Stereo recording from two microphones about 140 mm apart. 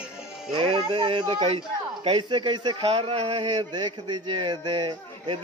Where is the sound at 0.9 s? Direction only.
35° right (ahead or behind).